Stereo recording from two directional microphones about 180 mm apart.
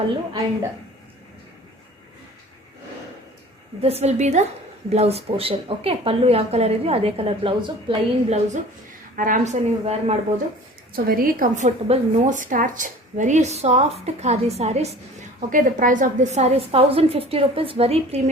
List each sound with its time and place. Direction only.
3.8 s a woman's voice: 35° right (ahead or behind)
10.9 s a woman's voice: 55° right (ahead or behind); by 14.8 s 35° right (ahead or behind)
15.4 s a woman's voice: 45° right (ahead or behind)